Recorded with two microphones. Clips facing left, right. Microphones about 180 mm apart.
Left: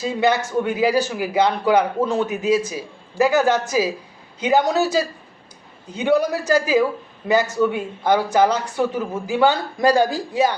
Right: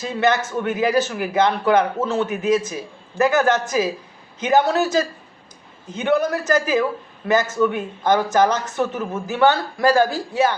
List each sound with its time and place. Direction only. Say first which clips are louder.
0.0 s a man's voice: left 1 dB; 15° left (ahead or behind)